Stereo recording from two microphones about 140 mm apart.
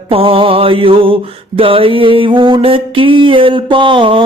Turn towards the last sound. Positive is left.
turn(degrees=-35)  # may be behind; listen again after turning